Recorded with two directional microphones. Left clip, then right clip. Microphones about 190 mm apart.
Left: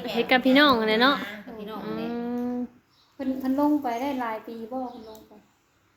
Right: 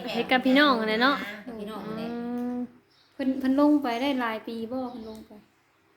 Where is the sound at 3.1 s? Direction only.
40° right (ahead or behind).